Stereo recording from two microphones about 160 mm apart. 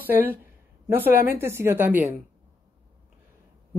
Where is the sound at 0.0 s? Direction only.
10° right (ahead or behind).